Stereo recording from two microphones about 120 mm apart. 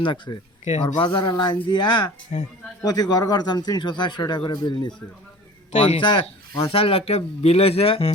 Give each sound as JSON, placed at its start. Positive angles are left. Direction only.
{"t": 0.0, "sound": "speech", "side_deg": 45}